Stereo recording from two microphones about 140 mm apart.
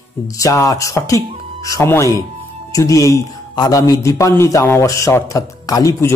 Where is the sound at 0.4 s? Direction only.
25° left (ahead or behind).